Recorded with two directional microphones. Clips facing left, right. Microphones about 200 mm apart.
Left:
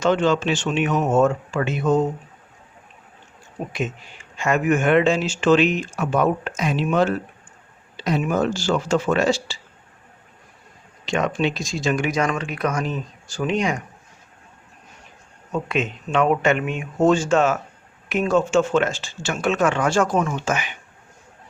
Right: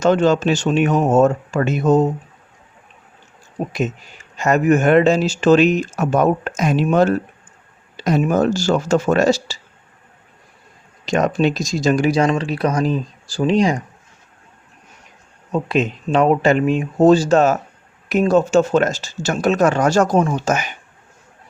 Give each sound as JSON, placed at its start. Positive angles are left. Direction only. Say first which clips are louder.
{"t": 0.0, "sound": "speech", "louder": "right 4 dB", "side_deg": -40}
{"t": 3.7, "sound": "speech", "louder": "right 4 dB", "side_deg": -40}
{"t": 11.0, "sound": "speech", "louder": "right 5 dB", "side_deg": -40}
{"t": 15.5, "sound": "speech", "louder": "right 5 dB", "side_deg": -35}